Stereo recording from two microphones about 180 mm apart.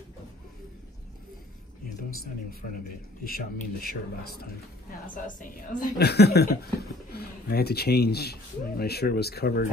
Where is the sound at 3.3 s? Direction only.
55° left (ahead or behind).